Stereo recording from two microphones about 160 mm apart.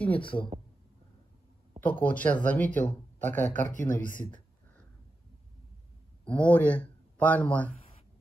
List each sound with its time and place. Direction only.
0.2 s speech: 30° left (ahead or behind)
1.8 s speech: 10° left (ahead or behind)
3.7 s speech: 55° left (ahead or behind)
6.2 s a man's voice: 10° left (ahead or behind)